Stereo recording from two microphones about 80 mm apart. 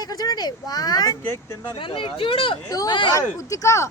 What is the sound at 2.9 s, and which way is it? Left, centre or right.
Speech, left.